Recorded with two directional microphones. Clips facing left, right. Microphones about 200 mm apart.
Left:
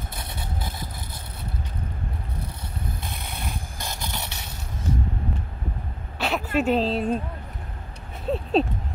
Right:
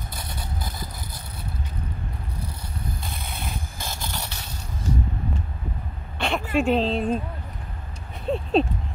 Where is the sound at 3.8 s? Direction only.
20° left (ahead or behind).